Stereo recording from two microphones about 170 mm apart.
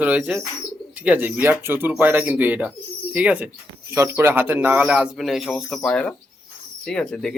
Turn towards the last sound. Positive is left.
turn(degrees=5)  # may be behind; listen again after turning